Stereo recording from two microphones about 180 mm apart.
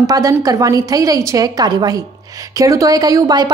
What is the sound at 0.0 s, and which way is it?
A woman's voice, 20° right (ahead or behind).